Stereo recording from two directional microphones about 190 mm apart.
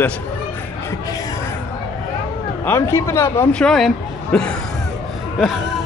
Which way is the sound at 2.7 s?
15° left (ahead or behind).